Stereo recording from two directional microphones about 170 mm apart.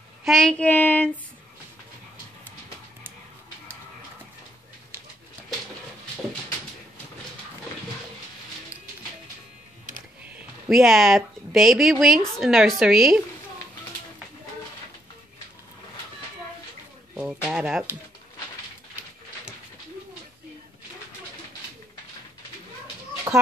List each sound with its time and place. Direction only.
0.2 s child singing: centre (ahead or behind)
10.2 s a woman's voice: 5° right (ahead or behind)
17.1 s speech: 5° right (ahead or behind)
23.3 s chicken: 10° right (ahead or behind)